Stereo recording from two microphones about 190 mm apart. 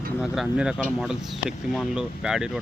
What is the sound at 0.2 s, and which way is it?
Speech, 5° right (ahead or behind).